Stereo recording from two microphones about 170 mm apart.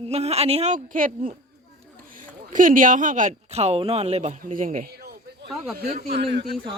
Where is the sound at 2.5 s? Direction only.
50° right (ahead or behind).